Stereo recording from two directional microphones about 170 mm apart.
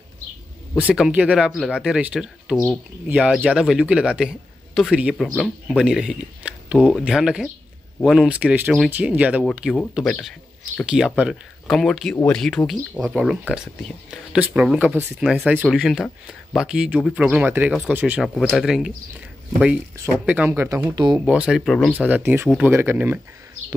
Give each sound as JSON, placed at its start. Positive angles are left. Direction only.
{"t": 0.7, "sound": "a man's voice", "side_deg": -5}
{"t": 20.2, "sound": "speech", "side_deg": -10}
{"t": 21.3, "sound": "speech", "side_deg": -5}